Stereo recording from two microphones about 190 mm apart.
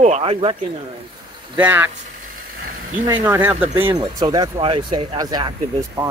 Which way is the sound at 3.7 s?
30° right (ahead or behind).